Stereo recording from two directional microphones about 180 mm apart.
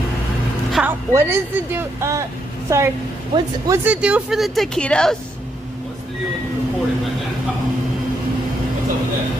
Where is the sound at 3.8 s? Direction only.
5° right (ahead or behind).